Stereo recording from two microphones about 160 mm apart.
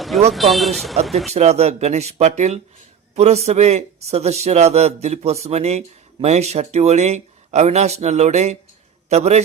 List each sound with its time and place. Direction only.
0.3 s speech: centre (ahead or behind)
1.3 s a man's voice: 40° right (ahead or behind)